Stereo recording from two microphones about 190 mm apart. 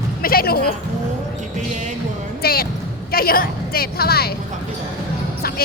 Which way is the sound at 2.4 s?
55° left (ahead or behind).